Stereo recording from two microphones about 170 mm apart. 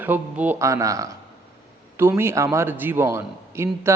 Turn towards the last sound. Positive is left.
turn(degrees=-15)  # may be behind; listen again after turning